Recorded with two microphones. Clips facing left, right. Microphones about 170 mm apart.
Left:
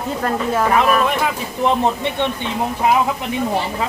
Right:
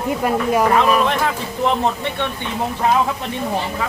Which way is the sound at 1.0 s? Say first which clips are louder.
Even; 10° left (ahead or behind).